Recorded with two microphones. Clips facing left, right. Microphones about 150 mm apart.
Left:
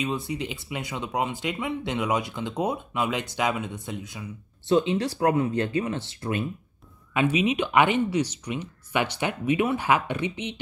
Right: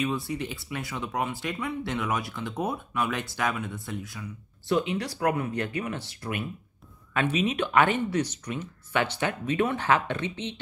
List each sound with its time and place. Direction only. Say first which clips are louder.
0.0 s speech: even; 20° left (ahead or behind)
7.2 s speech: left 3 dB; 10° left (ahead or behind)